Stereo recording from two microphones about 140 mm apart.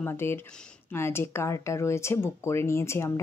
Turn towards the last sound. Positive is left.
turn(degrees=20)  # may be behind; listen again after turning